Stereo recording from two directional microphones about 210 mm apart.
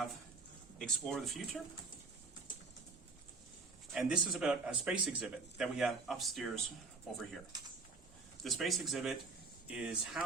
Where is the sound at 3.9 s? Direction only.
5° right (ahead or behind).